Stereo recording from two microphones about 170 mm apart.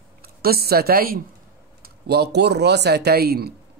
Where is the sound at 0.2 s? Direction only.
65° right (ahead or behind).